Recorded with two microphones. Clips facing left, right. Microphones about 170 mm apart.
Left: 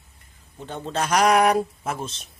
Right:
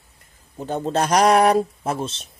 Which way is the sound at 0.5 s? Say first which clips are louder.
Right 6 dB; 40° right (ahead or behind).